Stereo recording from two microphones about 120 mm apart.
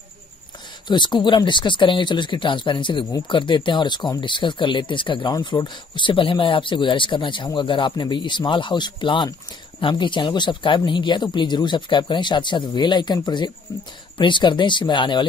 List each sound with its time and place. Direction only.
0.8 s speech: 40° left (ahead or behind)